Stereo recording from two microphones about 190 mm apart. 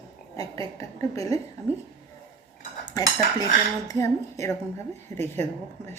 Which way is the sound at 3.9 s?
15° left (ahead or behind).